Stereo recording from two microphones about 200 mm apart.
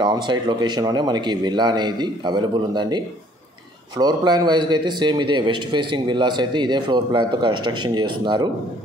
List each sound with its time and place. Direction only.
0.0 s a man's voice: 20° right (ahead or behind)